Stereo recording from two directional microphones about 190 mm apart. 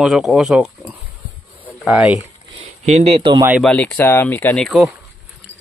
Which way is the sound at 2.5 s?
35° right (ahead or behind).